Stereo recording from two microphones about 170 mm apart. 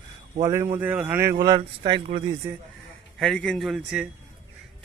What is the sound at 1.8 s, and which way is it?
Speech, 30° right (ahead or behind).